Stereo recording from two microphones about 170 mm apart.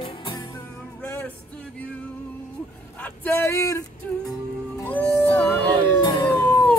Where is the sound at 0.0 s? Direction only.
25° left (ahead or behind).